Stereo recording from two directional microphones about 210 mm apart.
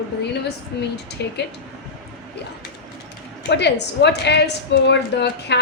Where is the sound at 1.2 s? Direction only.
55° left (ahead or behind).